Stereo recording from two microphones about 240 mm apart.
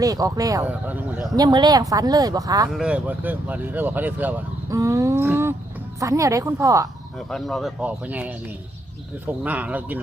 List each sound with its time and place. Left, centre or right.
0.0 s speech: centre
1.4 s speech: centre
2.6 s speech: centre
7.2 s speech: centre